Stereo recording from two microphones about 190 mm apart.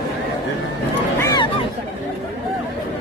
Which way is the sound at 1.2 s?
20° left (ahead or behind).